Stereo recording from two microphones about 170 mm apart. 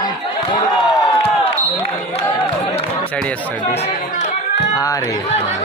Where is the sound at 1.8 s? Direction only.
35° left (ahead or behind).